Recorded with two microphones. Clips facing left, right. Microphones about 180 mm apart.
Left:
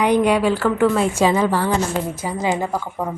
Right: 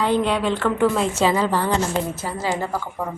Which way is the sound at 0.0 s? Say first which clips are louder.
Left 4 dB; 15° left (ahead or behind).